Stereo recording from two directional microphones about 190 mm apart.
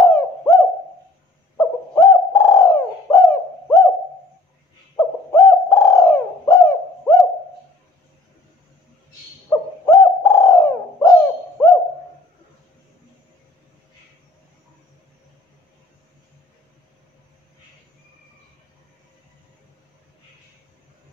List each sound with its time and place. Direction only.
0.0 s hoot: 15° left (ahead or behind)
1.6 s bird: 15° left (ahead or behind)
4.9 s bird: 15° left (ahead or behind)
9.5 s bird: 15° left (ahead or behind)